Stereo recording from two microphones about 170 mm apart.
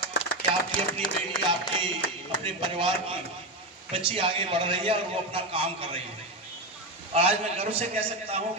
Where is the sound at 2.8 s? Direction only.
30° right (ahead or behind).